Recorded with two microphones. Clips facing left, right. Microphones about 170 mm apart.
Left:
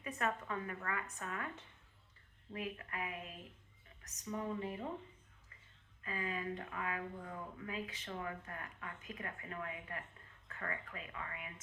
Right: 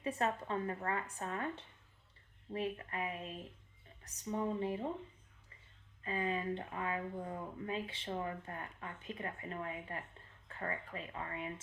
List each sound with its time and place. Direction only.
0.0 s a woman's voice: 30° right (ahead or behind)
6.0 s speech: 30° right (ahead or behind)